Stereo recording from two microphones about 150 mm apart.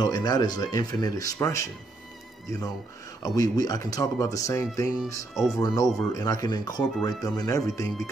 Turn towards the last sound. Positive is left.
turn(degrees=20)  # may be behind; listen again after turning